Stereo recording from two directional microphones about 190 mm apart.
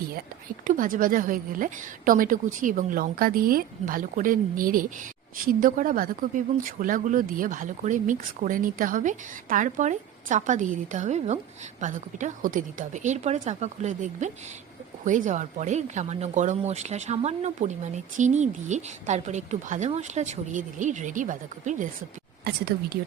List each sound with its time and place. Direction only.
0.4 s speech: 45° right (ahead or behind)
22.4 s speech: 55° right (ahead or behind)